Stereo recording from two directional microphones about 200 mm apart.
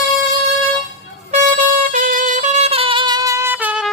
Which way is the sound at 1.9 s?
40° right (ahead or behind).